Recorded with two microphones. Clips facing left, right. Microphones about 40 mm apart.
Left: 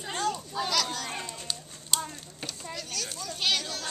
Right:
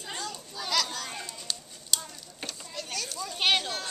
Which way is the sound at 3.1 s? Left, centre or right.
Right.